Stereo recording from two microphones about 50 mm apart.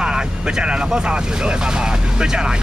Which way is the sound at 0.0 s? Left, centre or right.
Centre.